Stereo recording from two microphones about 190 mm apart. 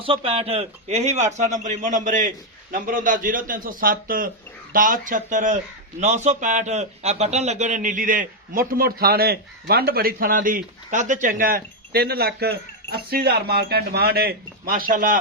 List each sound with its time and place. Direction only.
0.0 s a man's voice: 30° right (ahead or behind); by 15.2 s 45° right (ahead or behind)